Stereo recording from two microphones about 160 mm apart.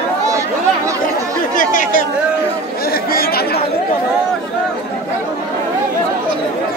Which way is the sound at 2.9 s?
70° left (ahead or behind).